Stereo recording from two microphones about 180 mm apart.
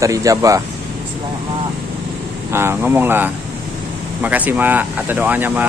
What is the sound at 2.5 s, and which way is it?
Speech, 15° right (ahead or behind).